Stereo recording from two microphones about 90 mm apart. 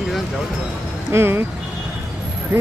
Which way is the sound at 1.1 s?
25° right (ahead or behind).